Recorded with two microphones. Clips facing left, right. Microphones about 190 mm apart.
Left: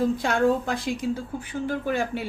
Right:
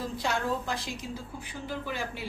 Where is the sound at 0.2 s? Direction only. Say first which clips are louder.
Left 8 dB; 55° left (ahead or behind).